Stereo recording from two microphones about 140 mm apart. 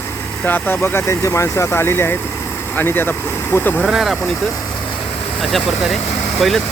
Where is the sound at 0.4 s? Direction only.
15° left (ahead or behind).